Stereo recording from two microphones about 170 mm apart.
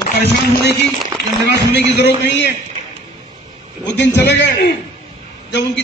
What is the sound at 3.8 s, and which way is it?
Speech, 90° left.